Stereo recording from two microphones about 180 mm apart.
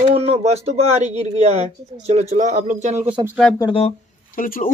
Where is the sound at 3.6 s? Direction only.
30° left (ahead or behind).